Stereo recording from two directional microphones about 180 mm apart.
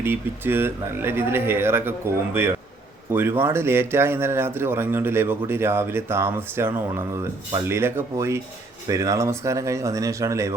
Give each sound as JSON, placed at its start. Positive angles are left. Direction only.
{"t": 0.0, "sound": "a man's voice", "side_deg": -10}